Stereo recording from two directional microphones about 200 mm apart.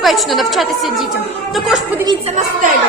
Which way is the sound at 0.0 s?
Centre (ahead or behind).